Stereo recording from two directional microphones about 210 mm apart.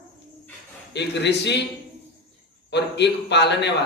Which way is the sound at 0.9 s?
55° left (ahead or behind).